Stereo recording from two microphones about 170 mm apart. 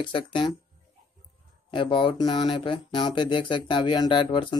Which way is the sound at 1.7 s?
30° left (ahead or behind).